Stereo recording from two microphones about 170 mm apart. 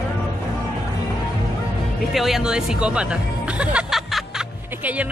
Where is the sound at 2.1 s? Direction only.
Centre (ahead or behind).